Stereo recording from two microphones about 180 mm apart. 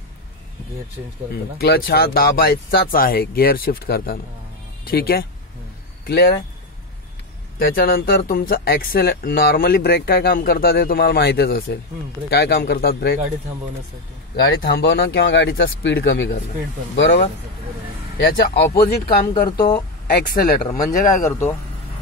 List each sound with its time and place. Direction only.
1.3 s speech: 60° left (ahead or behind)
7.5 s speech: 55° left (ahead or behind)
14.4 s speech: 65° left (ahead or behind)
16.9 s speech: 85° left
18.3 s speech: 70° left (ahead or behind)
20.6 s speech: 45° left (ahead or behind)
21.2 s speech: 15° left (ahead or behind)